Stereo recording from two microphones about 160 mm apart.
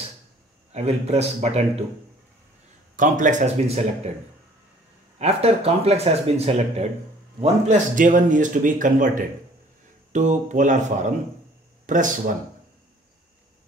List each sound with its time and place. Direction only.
0.7 s speech: 40° right (ahead or behind)
3.0 s speech: 50° right (ahead or behind)
5.2 s speech: 40° right (ahead or behind)